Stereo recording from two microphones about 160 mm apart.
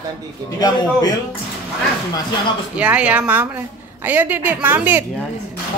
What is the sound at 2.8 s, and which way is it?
A woman's voice, 10° right (ahead or behind).